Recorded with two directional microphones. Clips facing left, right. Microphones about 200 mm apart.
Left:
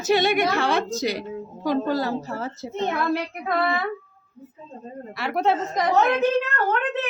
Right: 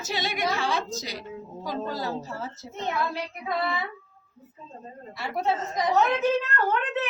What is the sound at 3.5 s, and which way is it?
Speech, 65° left (ahead or behind).